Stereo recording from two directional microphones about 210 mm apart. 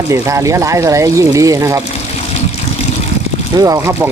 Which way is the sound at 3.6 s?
15° right (ahead or behind).